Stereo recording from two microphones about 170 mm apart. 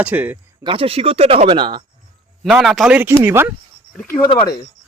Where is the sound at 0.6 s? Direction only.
30° right (ahead or behind).